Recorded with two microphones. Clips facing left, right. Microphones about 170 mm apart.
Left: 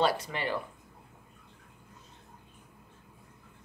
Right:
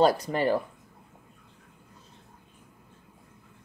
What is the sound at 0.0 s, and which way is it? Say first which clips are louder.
Speech: right 7 dB; 40° right (ahead or behind).